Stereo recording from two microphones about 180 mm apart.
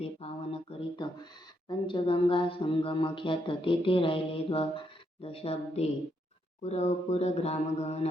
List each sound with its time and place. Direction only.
0.0 s speech: 35° left (ahead or behind)